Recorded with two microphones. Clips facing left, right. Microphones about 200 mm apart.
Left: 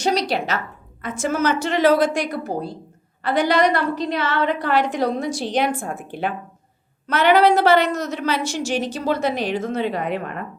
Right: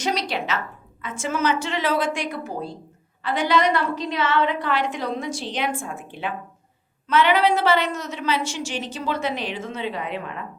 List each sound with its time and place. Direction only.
0.0 s a woman's voice: 35° left (ahead or behind)
3.2 s a sound: 40° left (ahead or behind)
4.2 s a woman's voice: 40° left (ahead or behind)
7.1 s a woman's voice: 40° left (ahead or behind)